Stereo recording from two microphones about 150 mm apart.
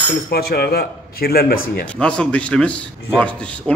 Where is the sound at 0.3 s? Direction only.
90° left.